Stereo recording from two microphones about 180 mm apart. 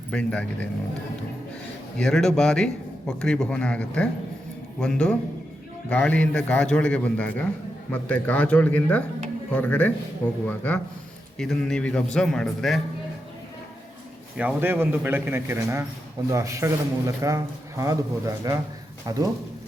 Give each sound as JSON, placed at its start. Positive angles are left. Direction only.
{"t": 0.1, "sound": "a man's voice", "side_deg": 5}
{"t": 2.0, "sound": "a man's voice", "side_deg": 5}
{"t": 14.3, "sound": "a man's voice", "side_deg": -10}